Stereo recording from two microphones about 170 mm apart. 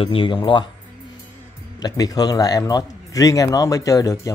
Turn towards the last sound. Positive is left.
turn(degrees=20)  # may be behind; listen again after turning